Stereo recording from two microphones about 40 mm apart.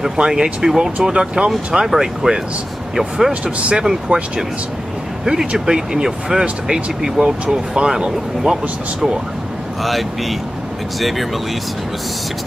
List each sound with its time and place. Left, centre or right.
0.0 s speech: centre
1.1 s speech: right
3.5 s speech: right
3.8 s speech: centre
9.8 s speech: centre